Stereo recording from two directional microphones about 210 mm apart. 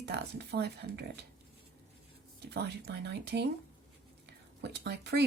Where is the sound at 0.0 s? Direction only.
55° right (ahead or behind).